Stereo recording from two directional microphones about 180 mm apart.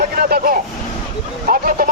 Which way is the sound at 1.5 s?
50° right (ahead or behind).